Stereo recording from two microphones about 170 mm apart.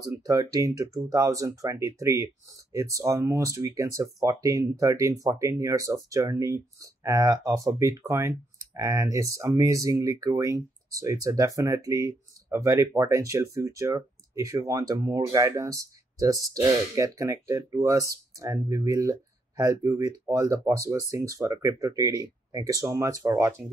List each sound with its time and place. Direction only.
0.2 s speech: 20° right (ahead or behind)